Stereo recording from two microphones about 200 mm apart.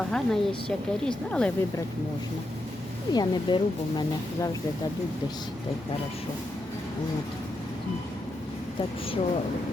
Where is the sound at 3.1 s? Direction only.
20° left (ahead or behind).